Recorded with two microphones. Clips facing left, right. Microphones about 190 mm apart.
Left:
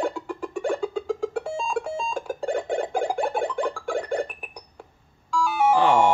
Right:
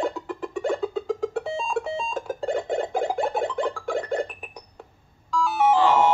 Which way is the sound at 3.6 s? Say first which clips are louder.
Even; 10° left (ahead or behind).